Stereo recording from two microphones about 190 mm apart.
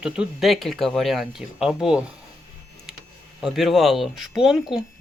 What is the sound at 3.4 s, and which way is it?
Speech, centre (ahead or behind).